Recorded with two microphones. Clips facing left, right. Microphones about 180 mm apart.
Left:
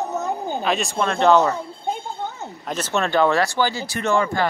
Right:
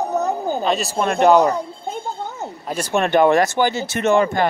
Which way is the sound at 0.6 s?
Centre (ahead or behind).